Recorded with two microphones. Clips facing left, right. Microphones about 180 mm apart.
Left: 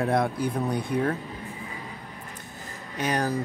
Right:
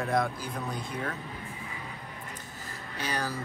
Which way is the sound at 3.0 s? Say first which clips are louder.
Left 7 dB; 50° left (ahead or behind).